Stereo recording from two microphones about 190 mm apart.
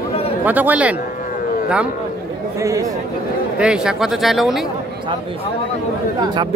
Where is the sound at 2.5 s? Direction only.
15° right (ahead or behind).